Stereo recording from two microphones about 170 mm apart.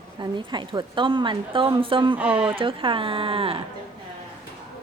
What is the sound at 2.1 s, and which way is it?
Speech, 5° right (ahead or behind).